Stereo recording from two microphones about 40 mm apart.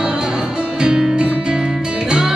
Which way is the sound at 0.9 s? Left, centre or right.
Right.